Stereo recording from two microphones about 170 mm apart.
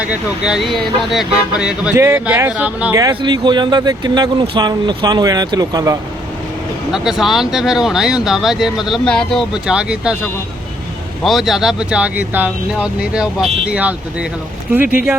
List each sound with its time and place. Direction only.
0.0 s speech: 5° right (ahead or behind)
3.0 s speech: 25° right (ahead or behind)
6.9 s speech: 5° right (ahead or behind)
11.2 s speech: centre (ahead or behind)